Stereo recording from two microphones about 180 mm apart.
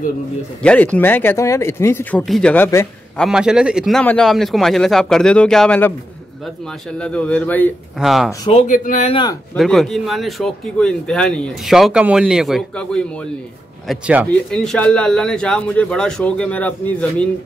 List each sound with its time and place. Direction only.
0.6 s speech: 5° left (ahead or behind)
3.2 s speech: 5° right (ahead or behind)
7.0 s speech: 5° left (ahead or behind)
8.0 s speech: centre (ahead or behind)
8.5 s speech: 35° left (ahead or behind)
8.7 s speech: 45° left (ahead or behind)
9.1 s speech: 25° left (ahead or behind)
9.6 s speech: centre (ahead or behind)